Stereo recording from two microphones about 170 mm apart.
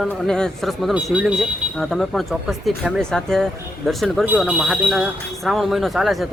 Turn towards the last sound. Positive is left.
turn(degrees=0)  # may be behind; listen again after turning